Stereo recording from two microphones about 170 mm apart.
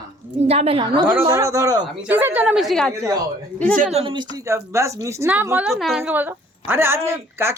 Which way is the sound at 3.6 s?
55° right (ahead or behind).